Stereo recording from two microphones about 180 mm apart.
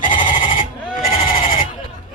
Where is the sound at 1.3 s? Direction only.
50° left (ahead or behind).